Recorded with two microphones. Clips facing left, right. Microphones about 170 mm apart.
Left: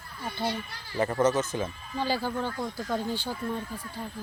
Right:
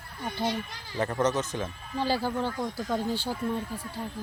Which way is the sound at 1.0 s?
Centre (ahead or behind).